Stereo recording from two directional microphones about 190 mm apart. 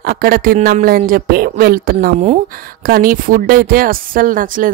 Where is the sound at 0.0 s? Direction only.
50° right (ahead or behind).